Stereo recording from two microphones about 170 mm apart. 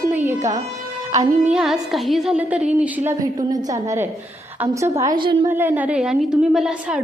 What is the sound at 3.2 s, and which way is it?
A woman's voice, 20° right (ahead or behind).